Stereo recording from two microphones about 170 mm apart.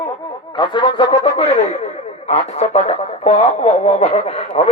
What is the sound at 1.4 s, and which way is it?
Speech, 40° left (ahead or behind).